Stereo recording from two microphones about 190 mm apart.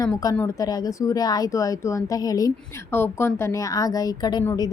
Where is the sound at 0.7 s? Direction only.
20° left (ahead or behind).